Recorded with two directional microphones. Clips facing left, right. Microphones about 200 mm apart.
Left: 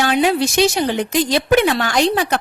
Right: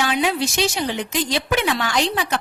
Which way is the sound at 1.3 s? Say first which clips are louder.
Left 7 dB; 45° left (ahead or behind).